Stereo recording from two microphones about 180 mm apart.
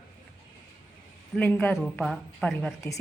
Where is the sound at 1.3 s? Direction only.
10° left (ahead or behind).